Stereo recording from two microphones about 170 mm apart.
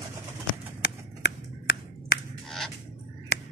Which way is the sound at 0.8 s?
90° left.